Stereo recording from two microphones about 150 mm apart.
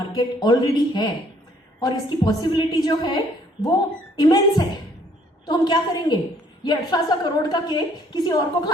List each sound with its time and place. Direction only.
0.1 s a woman's voice: 25° left (ahead or behind)